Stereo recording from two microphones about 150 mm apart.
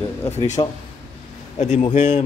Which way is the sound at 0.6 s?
35° left (ahead or behind).